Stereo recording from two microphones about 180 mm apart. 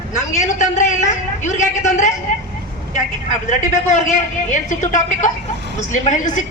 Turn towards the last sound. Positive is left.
turn(degrees=45)  # may be behind; listen again after turning